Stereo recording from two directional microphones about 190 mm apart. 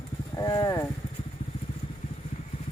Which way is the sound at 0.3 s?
20° left (ahead or behind).